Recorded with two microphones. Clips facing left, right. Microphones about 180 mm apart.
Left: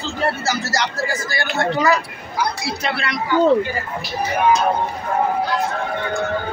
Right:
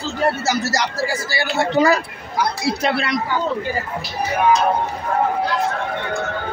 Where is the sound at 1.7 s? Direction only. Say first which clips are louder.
Right 3 dB; 30° right (ahead or behind).